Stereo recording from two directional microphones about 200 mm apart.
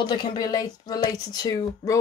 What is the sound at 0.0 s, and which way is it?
Speech, 20° left (ahead or behind).